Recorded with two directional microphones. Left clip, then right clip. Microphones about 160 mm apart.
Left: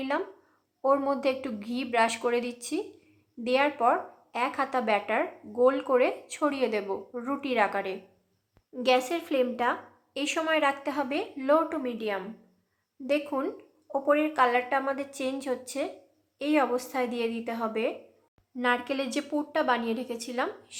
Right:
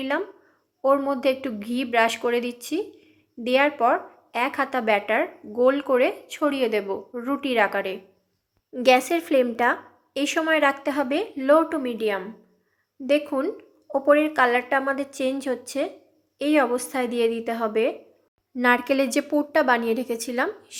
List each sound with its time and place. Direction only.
0.8 s a woman's voice: 10° right (ahead or behind)